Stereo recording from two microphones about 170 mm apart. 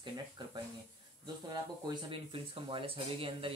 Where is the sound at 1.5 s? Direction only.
25° right (ahead or behind).